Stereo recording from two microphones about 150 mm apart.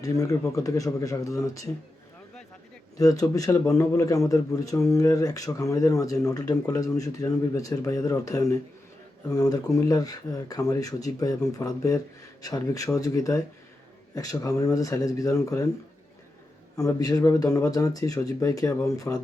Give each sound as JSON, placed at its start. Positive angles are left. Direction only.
{"t": 0.0, "sound": "speech", "side_deg": 20}
{"t": 3.0, "sound": "speech", "side_deg": 25}
{"t": 16.7, "sound": "speech", "side_deg": 25}